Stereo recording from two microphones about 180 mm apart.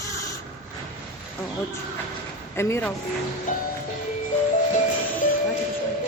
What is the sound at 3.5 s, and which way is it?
Music, 50° left (ahead or behind).